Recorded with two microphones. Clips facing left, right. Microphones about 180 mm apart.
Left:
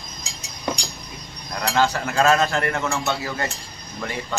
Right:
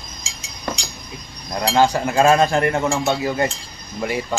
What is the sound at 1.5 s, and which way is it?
Speech, 30° right (ahead or behind).